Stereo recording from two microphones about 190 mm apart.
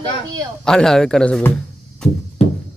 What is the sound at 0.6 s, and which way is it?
Speech, 5° left (ahead or behind).